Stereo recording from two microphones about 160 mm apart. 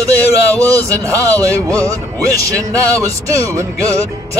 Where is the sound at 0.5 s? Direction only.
20° right (ahead or behind).